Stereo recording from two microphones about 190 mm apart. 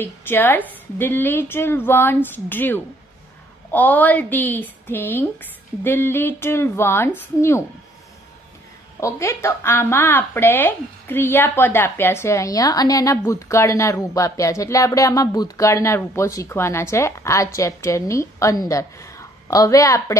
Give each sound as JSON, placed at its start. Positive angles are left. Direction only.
{"t": 0.0, "sound": "speech", "side_deg": 10}
{"t": 9.0, "sound": "speech", "side_deg": 15}